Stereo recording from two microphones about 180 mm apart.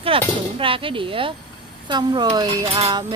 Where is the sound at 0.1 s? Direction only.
30° right (ahead or behind).